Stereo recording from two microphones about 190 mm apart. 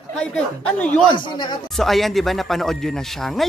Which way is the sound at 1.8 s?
Centre (ahead or behind).